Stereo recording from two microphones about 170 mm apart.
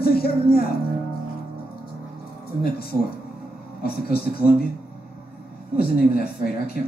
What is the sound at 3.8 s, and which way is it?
Speech, 65° left (ahead or behind).